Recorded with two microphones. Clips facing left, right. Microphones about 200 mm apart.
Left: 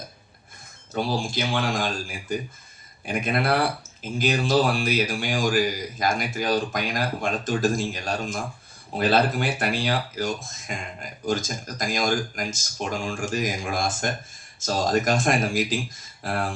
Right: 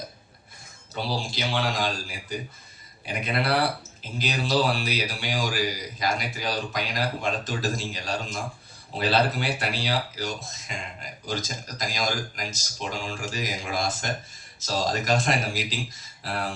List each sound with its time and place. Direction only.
0.9 s speech: 50° left (ahead or behind)